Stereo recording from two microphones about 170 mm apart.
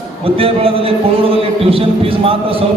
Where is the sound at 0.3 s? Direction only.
35° right (ahead or behind).